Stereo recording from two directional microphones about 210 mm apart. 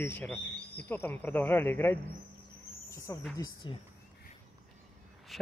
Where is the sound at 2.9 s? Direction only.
15° left (ahead or behind).